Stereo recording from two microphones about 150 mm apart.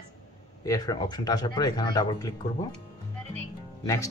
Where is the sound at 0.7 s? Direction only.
25° left (ahead or behind).